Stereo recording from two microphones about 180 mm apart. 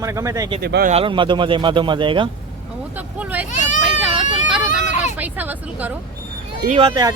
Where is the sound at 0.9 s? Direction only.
30° right (ahead or behind).